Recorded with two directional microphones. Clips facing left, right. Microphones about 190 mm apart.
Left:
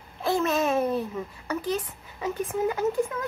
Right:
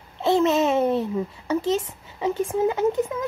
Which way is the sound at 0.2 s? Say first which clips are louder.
Right 5 dB; 25° right (ahead or behind).